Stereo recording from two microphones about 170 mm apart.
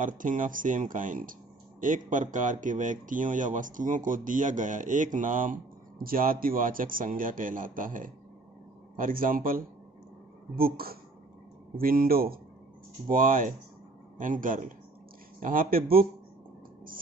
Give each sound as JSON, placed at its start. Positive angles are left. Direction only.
{"t": 0.0, "sound": "a man's voice", "side_deg": -50}